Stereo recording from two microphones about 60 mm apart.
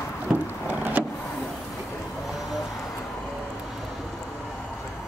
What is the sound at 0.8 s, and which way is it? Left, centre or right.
Vehicle, right.